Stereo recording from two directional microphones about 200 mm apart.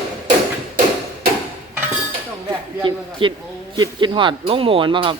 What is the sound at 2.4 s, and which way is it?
Speech, 25° right (ahead or behind).